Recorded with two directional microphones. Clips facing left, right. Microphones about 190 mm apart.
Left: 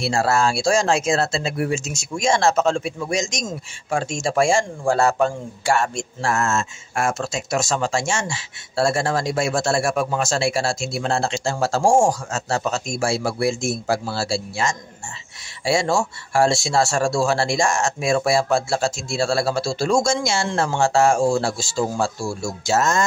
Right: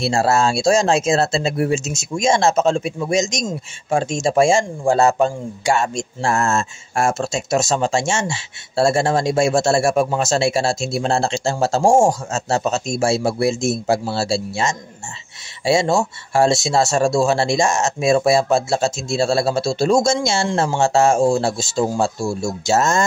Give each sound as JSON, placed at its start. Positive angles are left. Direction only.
{"t": 0.0, "sound": "speech", "side_deg": -25}
{"t": 6.3, "sound": "speech", "side_deg": -30}